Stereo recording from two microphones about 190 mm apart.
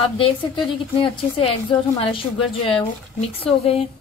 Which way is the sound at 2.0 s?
30° left (ahead or behind).